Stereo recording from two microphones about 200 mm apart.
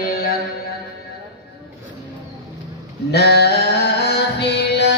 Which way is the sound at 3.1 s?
55° left (ahead or behind).